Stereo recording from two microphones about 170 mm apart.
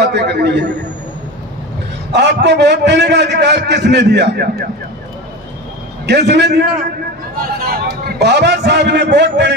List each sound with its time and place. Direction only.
0.0 s a sound: 85° right
2.1 s a man's voice: 85° right
6.0 s a man's voice: 80° right
7.6 s a man's voice: 60° right (ahead or behind); by 9.5 s 90° right